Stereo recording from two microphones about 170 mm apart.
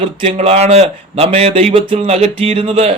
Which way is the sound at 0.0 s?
35° right (ahead or behind).